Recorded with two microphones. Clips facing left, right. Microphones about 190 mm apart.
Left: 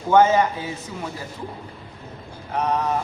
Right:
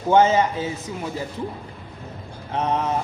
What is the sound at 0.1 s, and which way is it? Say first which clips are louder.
Speech: even; 25° right (ahead or behind).